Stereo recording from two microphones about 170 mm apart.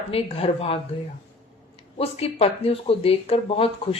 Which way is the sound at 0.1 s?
35° left (ahead or behind).